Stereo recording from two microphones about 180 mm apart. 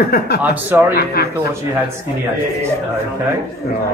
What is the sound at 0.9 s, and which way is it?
Speech, 60° left (ahead or behind).